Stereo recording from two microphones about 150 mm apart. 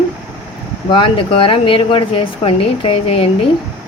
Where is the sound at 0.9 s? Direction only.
35° left (ahead or behind).